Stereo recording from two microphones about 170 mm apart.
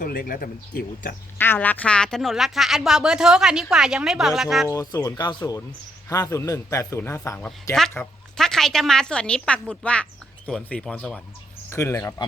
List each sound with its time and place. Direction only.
0.0 s speech: 55° left (ahead or behind)
1.4 s a woman's voice: 10° left (ahead or behind)
4.7 s a man's voice: 20° left (ahead or behind); by 11.2 s 5° left (ahead or behind)
11.7 s a man's voice: 15° left (ahead or behind)